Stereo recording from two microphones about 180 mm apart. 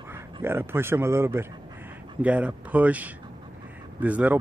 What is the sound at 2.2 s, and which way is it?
Speech, 5° right (ahead or behind).